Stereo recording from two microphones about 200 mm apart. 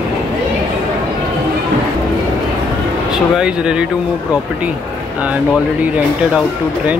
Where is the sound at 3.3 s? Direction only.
5° right (ahead or behind).